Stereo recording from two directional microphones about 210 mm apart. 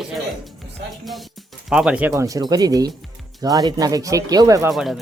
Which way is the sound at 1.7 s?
5° right (ahead or behind).